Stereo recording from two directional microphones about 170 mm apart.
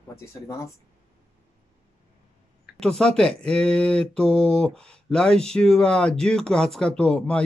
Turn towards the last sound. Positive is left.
turn(degrees=5)  # may be behind; listen again after turning